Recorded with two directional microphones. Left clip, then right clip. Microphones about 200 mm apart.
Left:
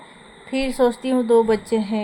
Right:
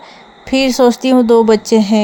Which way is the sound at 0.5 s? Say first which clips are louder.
Right 9 dB; 40° right (ahead or behind).